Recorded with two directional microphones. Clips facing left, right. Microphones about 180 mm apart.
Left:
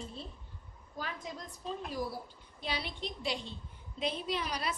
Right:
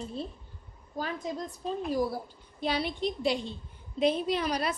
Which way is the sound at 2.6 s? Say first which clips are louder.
Right 9 dB; 45° right (ahead or behind).